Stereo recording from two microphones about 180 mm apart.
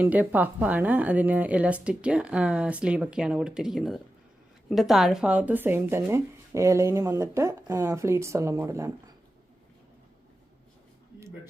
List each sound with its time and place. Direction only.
0.0 s speech: 10° right (ahead or behind)